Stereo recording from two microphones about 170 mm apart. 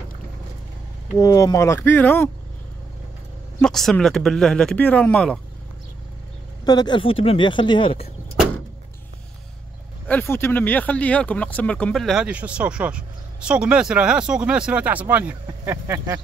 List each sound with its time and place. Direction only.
1.1 s speech: 20° left (ahead or behind)
3.6 s speech: 5° left (ahead or behind)
6.6 s speech: 25° left (ahead or behind)
10.0 s speech: 10° left (ahead or behind); by 16.2 s 15° right (ahead or behind)